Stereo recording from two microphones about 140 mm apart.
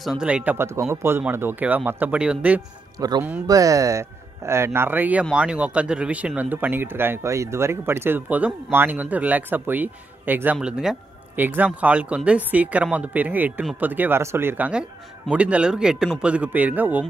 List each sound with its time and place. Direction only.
0.0 s speech: 5° right (ahead or behind)
3.0 s speech: 25° right (ahead or behind)